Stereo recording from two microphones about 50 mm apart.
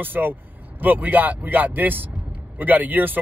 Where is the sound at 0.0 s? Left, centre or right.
Right.